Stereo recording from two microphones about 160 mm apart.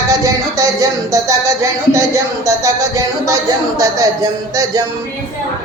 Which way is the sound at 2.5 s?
20° right (ahead or behind).